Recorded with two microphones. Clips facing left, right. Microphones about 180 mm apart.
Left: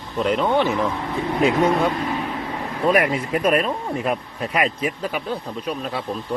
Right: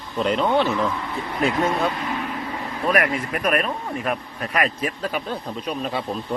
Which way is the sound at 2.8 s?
25° left (ahead or behind).